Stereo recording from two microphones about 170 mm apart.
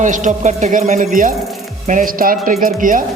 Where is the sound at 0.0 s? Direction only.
45° right (ahead or behind).